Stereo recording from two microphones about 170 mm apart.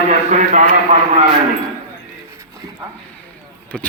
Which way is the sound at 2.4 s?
20° right (ahead or behind).